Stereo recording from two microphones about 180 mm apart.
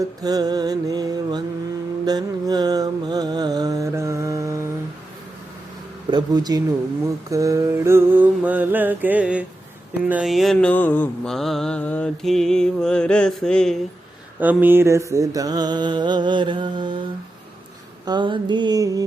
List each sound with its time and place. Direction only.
0.2 s music: 20° right (ahead or behind)
2.0 s mantra: 20° right (ahead or behind)
6.1 s music: 25° right (ahead or behind)
7.0 s mantra: 20° right (ahead or behind); by 13.7 s 5° left (ahead or behind)
14.3 s music: 10° right (ahead or behind); by 17.0 s 25° right (ahead or behind)
18.0 s music: 25° right (ahead or behind)